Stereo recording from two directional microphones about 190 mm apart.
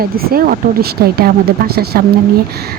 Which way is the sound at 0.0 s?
50° right (ahead or behind).